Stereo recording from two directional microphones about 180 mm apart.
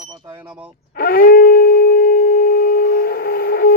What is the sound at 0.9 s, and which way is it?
Shofar, 55° left (ahead or behind).